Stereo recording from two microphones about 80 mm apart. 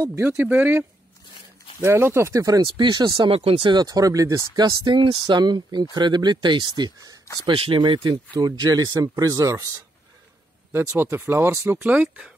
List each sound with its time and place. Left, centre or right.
0.4 s speech: right
2.8 s speech: right
7.4 s speech: right
10.7 s speech: right
11.8 s speech: centre